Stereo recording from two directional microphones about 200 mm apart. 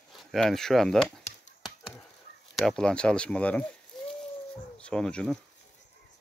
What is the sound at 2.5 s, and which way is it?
Speech, centre (ahead or behind).